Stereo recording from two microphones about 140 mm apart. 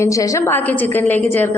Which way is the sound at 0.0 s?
20° left (ahead or behind).